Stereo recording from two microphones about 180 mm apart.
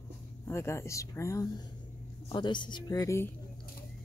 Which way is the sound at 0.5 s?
15° left (ahead or behind).